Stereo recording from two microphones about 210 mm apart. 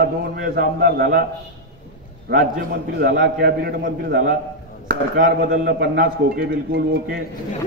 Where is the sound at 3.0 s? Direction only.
55° right (ahead or behind).